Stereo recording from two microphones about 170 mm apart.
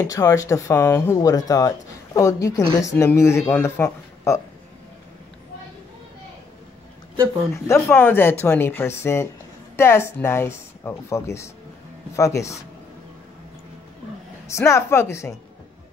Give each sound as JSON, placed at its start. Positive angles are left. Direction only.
{"t": 0.0, "sound": "speech", "side_deg": 20}
{"t": 7.5, "sound": "speech", "side_deg": 15}
{"t": 14.5, "sound": "speech", "side_deg": 15}